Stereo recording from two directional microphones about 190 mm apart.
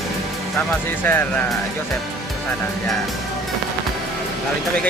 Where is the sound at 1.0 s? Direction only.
10° left (ahead or behind).